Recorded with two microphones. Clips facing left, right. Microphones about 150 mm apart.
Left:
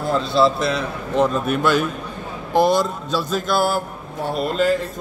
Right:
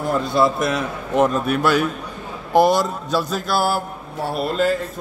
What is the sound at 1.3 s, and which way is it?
Music, centre (ahead or behind).